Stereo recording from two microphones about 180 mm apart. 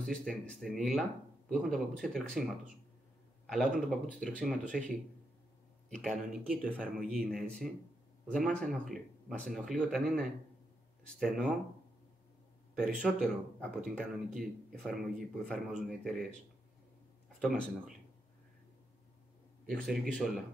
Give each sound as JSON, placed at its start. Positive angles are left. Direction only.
{"t": 0.0, "sound": "speech", "side_deg": 5}
{"t": 3.9, "sound": "speech", "side_deg": 5}
{"t": 5.9, "sound": "speech", "side_deg": 0}
{"t": 12.7, "sound": "speech", "side_deg": 0}
{"t": 17.4, "sound": "speech", "side_deg": 0}
{"t": 19.7, "sound": "speech", "side_deg": 0}